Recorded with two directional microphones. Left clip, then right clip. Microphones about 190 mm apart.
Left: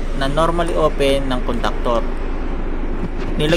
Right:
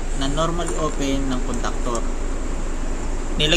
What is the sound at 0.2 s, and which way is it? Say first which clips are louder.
Speech: left 6 dB; 40° left (ahead or behind).